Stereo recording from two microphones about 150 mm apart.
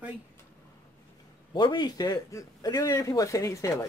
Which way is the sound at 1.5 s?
30° left (ahead or behind).